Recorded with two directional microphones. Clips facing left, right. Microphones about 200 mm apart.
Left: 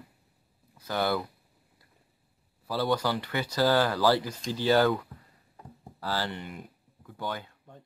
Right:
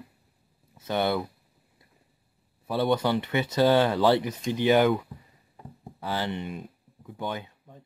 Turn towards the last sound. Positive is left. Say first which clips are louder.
# right 2 dB
turn(degrees=-20)  # may be behind; listen again after turning